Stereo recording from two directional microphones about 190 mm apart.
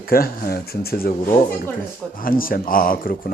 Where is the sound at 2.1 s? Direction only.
50° left (ahead or behind).